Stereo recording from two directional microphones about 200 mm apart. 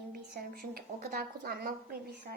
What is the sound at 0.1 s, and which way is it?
A woman's voice, 50° right (ahead or behind).